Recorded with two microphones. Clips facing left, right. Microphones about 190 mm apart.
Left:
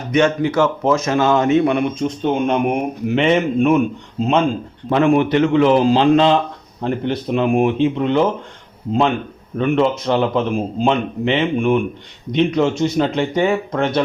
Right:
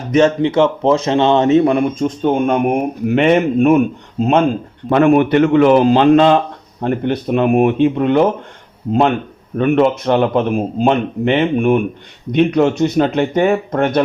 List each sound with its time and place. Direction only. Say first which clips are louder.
0.4 s a man's voice: right 3 dB; 25° right (ahead or behind); by 14.0 s 55° right (ahead or behind)